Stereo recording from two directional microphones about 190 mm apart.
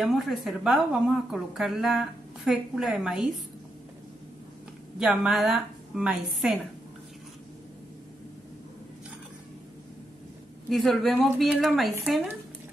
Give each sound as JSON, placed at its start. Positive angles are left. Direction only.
{"t": 0.0, "sound": "a woman's voice", "side_deg": 0}
{"t": 4.9, "sound": "a woman's voice", "side_deg": -5}
{"t": 10.7, "sound": "a woman's voice", "side_deg": 0}